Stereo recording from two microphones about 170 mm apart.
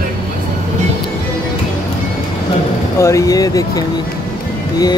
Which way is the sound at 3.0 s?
20° left (ahead or behind).